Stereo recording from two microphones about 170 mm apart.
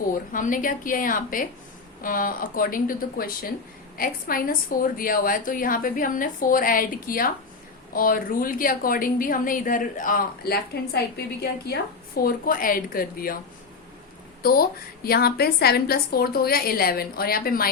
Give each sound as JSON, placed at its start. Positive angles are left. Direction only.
{"t": 0.1, "sound": "a woman's voice", "side_deg": 50}
{"t": 14.4, "sound": "a woman's voice", "side_deg": 60}